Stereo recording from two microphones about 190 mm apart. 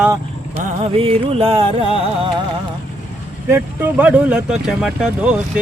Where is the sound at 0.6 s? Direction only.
35° right (ahead or behind).